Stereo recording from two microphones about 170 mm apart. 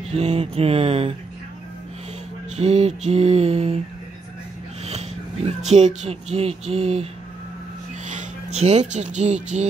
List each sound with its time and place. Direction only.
0.1 s music: 40° right (ahead or behind)
2.5 s music: 40° right (ahead or behind)
4.8 s a sound: 40° right (ahead or behind)
6.7 s music: 40° right (ahead or behind)
8.1 s speech: 45° right (ahead or behind)